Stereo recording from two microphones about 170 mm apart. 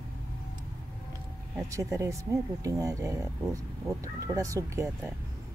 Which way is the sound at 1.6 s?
15° right (ahead or behind).